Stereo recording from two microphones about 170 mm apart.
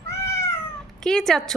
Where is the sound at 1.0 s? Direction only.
5° left (ahead or behind).